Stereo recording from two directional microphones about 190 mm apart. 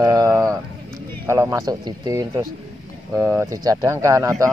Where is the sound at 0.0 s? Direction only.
20° right (ahead or behind).